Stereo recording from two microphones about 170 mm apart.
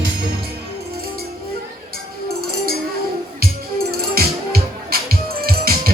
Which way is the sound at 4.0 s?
65° right (ahead or behind).